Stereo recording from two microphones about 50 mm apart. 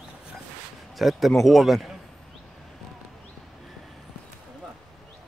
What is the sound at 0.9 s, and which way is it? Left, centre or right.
Speech, centre.